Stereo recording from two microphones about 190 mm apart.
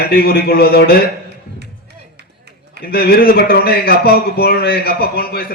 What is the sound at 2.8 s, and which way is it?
A man's voice, 55° left (ahead or behind).